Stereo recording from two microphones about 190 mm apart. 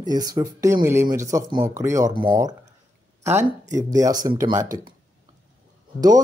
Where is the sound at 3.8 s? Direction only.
20° right (ahead or behind).